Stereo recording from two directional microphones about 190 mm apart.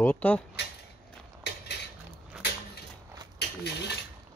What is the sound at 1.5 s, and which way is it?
Cutlery, 65° left (ahead or behind).